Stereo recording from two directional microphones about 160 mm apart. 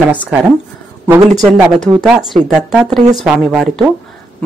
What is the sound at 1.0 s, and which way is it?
Speech, 15° right (ahead or behind).